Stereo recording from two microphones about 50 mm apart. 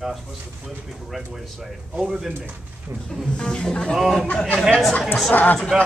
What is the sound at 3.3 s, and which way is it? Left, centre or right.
Speech, centre.